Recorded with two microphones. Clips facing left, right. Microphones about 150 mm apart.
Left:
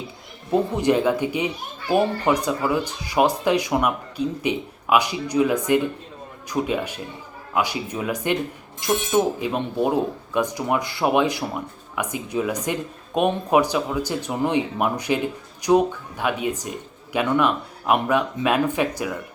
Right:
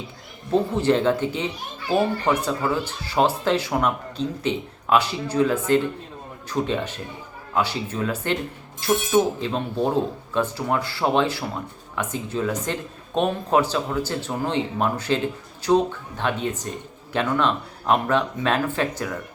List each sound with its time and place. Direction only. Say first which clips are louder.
0.5 s speech: even; 15° left (ahead or behind)